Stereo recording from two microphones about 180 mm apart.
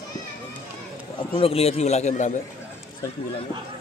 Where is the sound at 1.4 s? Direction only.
30° left (ahead or behind).